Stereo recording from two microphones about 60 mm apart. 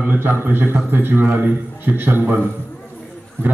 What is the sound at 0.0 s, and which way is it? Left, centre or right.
A man's voice, right.